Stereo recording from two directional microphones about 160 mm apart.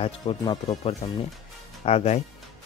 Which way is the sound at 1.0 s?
35° left (ahead or behind).